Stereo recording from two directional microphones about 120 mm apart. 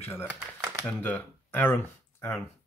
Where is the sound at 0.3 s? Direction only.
10° right (ahead or behind).